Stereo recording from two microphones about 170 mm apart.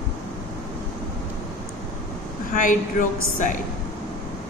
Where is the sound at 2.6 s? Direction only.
50° left (ahead or behind).